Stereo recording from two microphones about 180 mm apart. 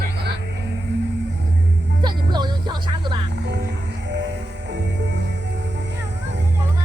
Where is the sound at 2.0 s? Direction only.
25° right (ahead or behind).